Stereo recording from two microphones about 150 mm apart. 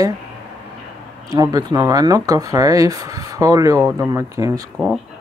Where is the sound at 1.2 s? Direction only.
25° right (ahead or behind).